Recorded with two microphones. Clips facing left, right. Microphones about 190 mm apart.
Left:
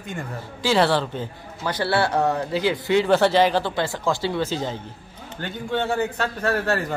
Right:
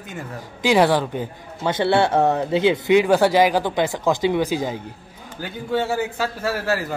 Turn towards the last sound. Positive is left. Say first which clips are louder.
# even
turn(degrees=-5)  # may be behind; listen again after turning